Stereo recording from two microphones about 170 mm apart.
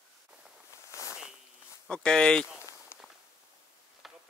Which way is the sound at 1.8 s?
5° left (ahead or behind).